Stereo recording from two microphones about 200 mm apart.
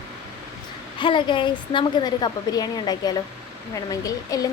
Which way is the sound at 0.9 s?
25° left (ahead or behind).